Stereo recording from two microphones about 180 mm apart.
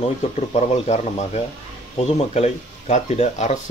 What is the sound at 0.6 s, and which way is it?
Speech, 40° left (ahead or behind).